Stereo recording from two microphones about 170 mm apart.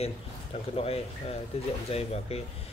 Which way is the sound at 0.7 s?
35° left (ahead or behind).